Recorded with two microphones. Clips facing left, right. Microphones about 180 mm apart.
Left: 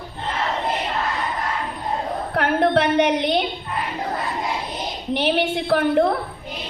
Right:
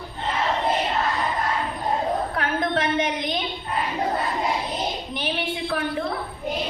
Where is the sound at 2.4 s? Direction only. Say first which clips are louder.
Left 5 dB; 70° left (ahead or behind).